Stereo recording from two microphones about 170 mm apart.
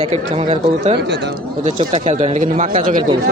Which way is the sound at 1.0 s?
85° right.